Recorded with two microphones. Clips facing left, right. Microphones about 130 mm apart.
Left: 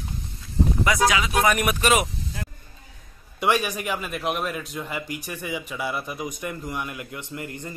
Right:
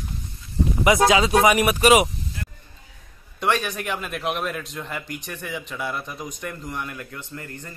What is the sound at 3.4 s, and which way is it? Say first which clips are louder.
Speech: left 1 dB; 10° left (ahead or behind).